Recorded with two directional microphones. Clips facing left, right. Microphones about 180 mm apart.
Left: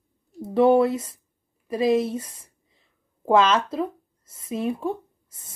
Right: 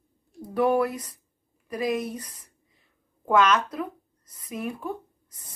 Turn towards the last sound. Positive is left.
turn(degrees=25)  # may be behind; listen again after turning